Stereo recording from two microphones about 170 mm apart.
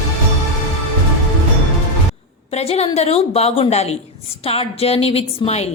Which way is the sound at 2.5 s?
35° left (ahead or behind).